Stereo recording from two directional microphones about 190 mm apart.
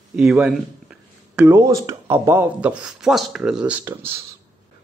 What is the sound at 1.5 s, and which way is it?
Speech, 20° right (ahead or behind).